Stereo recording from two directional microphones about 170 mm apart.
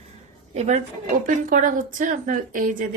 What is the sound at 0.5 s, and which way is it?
Speech, 40° right (ahead or behind).